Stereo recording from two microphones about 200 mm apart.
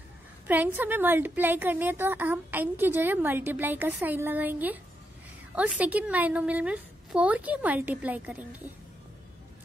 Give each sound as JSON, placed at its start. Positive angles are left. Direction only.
{"t": 0.5, "sound": "a woman's voice", "side_deg": -10}